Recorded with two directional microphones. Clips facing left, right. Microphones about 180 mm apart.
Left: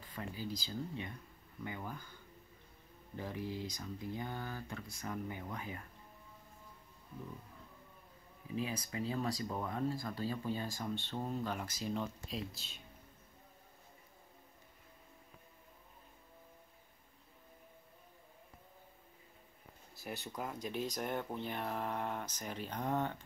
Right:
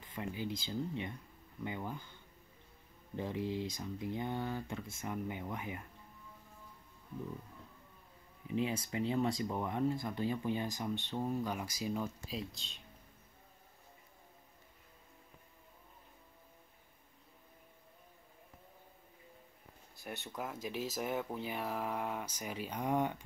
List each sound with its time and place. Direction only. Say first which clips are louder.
0.0 s speech: right 3 dB; 20° right (ahead or behind)
3.2 s speech: right 4 dB; 20° right (ahead or behind)
8.5 s speech: right 4 dB; 25° right (ahead or behind); by 12.8 s 5° left (ahead or behind)
20.1 s speech: even; centre (ahead or behind)